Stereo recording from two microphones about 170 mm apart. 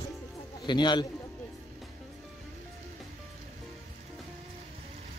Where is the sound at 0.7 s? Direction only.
25° left (ahead or behind).